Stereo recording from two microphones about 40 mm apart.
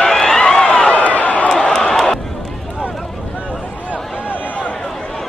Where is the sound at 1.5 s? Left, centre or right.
Centre.